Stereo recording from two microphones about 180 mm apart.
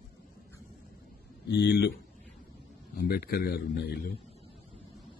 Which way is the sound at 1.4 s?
70° left (ahead or behind).